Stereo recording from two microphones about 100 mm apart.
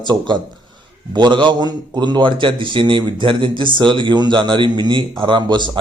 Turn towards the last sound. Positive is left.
turn(degrees=-50)  # may be behind; listen again after turning